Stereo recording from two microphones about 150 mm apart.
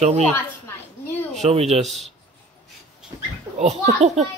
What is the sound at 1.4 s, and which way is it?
Speech, 45° right (ahead or behind).